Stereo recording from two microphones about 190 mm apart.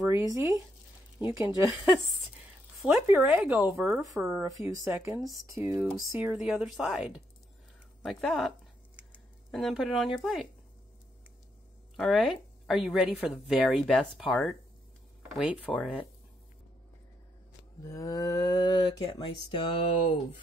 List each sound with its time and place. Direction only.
0.1 s speech: 15° right (ahead or behind)
3.3 s a woman's voice: centre (ahead or behind)
8.0 s a sound: centre (ahead or behind)
9.5 s a woman's voice: centre (ahead or behind)
12.0 s a woman's voice: centre (ahead or behind)
15.6 s speech: 5° left (ahead or behind)
17.8 s speech: 15° left (ahead or behind)